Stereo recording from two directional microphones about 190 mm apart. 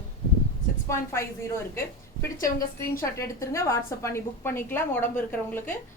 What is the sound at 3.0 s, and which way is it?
A woman's voice, 15° left (ahead or behind).